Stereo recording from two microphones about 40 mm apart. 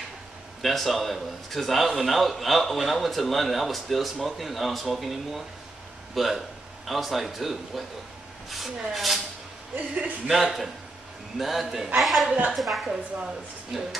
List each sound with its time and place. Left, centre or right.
0.6 s a man's voice: centre
10.2 s a man's voice: centre
12.8 s a woman's voice: centre
13.7 s a man's voice: centre